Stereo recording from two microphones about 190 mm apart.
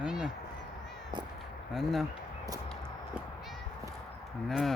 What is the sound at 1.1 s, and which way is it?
Speech, 25° right (ahead or behind).